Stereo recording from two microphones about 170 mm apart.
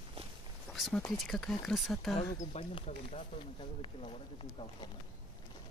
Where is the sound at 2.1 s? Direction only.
35° left (ahead or behind).